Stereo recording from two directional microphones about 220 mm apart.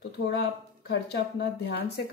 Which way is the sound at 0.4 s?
50° left (ahead or behind).